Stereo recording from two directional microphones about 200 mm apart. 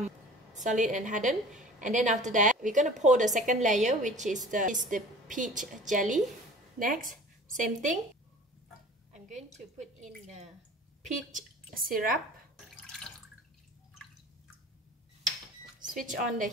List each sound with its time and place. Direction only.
0.6 s a woman's voice: 40° right (ahead or behind)
9.1 s a sound: 35° right (ahead or behind)
11.3 s speech: 45° right (ahead or behind)
12.6 s water: centre (ahead or behind)
15.8 s speech: 40° right (ahead or behind)